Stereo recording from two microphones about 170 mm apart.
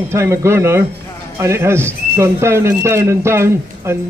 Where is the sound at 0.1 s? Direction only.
15° right (ahead or behind).